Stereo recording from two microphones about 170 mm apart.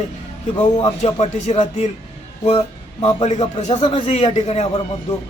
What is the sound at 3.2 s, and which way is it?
A man's voice, 40° left (ahead or behind).